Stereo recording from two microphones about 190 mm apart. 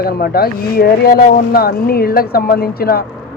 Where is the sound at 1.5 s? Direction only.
55° left (ahead or behind).